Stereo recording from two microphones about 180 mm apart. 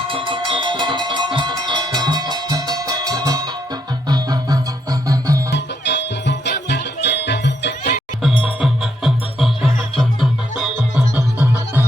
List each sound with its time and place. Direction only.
0.1 s music: 30° right (ahead or behind)
5.5 s music: 75° left (ahead or behind)
8.2 s music: centre (ahead or behind)